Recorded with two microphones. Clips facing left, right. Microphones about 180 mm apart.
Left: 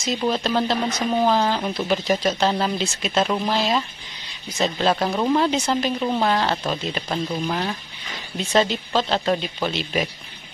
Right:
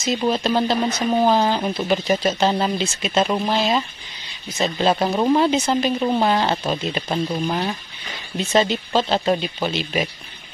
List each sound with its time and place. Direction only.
0.0 s speech: 5° right (ahead or behind)
5.1 s speech: 20° right (ahead or behind)
5.4 s speech: 5° right (ahead or behind)
8.4 s speech: centre (ahead or behind)